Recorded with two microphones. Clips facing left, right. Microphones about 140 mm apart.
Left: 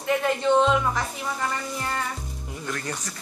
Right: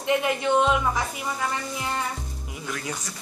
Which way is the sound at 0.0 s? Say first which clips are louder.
Even; 10° right (ahead or behind).